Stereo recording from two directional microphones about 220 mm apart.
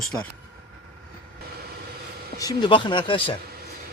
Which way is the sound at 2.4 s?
20° left (ahead or behind).